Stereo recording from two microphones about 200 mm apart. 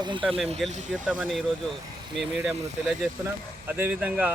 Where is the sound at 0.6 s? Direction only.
Centre (ahead or behind).